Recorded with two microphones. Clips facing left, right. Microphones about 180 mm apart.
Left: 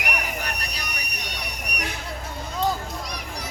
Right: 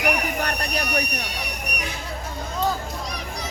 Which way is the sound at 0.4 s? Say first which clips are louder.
Right 7 dB; 60° right (ahead or behind).